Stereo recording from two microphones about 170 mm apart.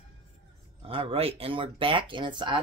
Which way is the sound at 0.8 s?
30° right (ahead or behind).